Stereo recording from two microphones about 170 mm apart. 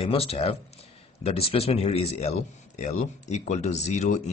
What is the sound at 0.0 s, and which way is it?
Speech, 35° left (ahead or behind).